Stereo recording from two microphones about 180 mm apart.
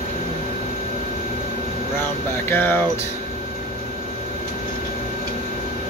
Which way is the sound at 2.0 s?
10° left (ahead or behind).